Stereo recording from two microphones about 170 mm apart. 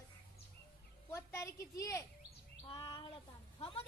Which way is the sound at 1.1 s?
15° left (ahead or behind).